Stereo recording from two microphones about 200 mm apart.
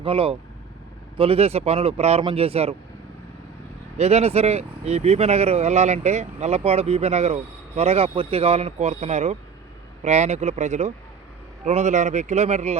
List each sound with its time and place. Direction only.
0.0 s speech: 30° right (ahead or behind)
3.9 s speech: 30° right (ahead or behind)